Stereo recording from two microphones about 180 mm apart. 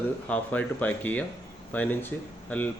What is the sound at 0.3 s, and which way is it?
Speech, 10° left (ahead or behind).